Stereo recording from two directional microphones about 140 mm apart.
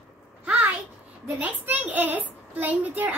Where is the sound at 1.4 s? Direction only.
10° right (ahead or behind).